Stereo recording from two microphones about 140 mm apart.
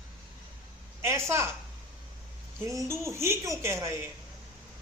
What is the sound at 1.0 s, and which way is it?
Speech, 20° right (ahead or behind).